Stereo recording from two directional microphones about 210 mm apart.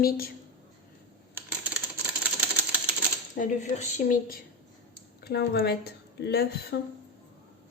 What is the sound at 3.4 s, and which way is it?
A woman's voice, 40° left (ahead or behind).